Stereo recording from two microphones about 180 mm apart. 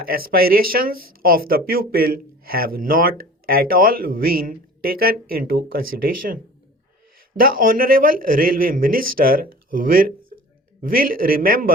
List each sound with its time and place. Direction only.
0.0 s speech: 55° right (ahead or behind)
7.3 s a man's voice: 50° right (ahead or behind)